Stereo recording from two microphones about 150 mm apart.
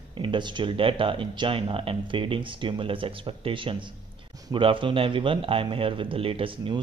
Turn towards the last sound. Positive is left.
turn(degrees=-35)  # may be behind; listen again after turning